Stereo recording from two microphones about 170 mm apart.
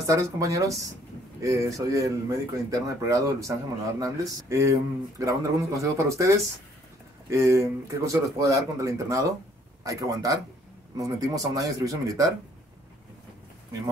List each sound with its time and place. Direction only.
0.0 s speech: 20° right (ahead or behind)